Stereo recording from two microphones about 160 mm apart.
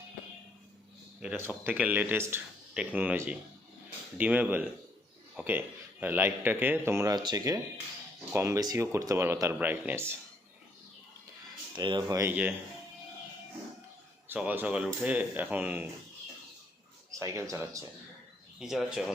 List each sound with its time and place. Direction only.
1.6 s a man's voice: 10° right (ahead or behind)
11.7 s speech: 30° right (ahead or behind)
14.3 s a man's voice: 10° right (ahead or behind)
17.1 s speech: 20° right (ahead or behind)
18.6 s speech: centre (ahead or behind)